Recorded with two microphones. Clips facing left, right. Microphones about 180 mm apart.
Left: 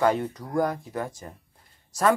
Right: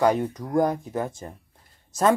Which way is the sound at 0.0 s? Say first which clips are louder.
Right 2 dB; 15° right (ahead or behind).